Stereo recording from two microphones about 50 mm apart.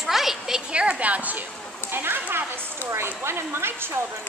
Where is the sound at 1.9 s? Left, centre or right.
Right.